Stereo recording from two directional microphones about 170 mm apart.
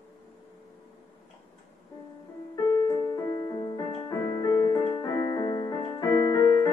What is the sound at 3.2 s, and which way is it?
Music, 20° left (ahead or behind).